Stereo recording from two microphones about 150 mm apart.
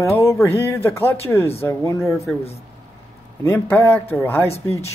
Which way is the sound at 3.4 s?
20° left (ahead or behind).